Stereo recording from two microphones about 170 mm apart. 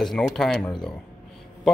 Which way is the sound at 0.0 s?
Centre (ahead or behind).